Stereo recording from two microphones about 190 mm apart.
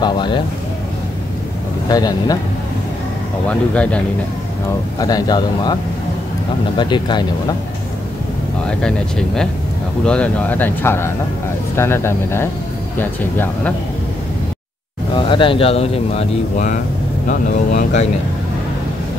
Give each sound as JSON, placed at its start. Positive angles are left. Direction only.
{"t": 0.0, "sound": "a man's voice", "side_deg": 25}
{"t": 1.9, "sound": "a man's voice", "side_deg": 20}
{"t": 3.4, "sound": "speech", "side_deg": 5}
{"t": 4.9, "sound": "a man's voice", "side_deg": 20}
{"t": 6.8, "sound": "a man's voice", "side_deg": 25}
{"t": 8.6, "sound": "speech", "side_deg": 5}
{"t": 15.1, "sound": "speech", "side_deg": 25}